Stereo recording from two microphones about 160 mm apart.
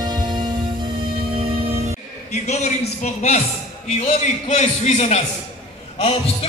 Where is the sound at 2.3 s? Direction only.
45° left (ahead or behind).